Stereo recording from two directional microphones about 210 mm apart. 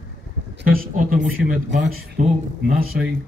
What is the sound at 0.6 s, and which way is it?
Speech, 45° right (ahead or behind).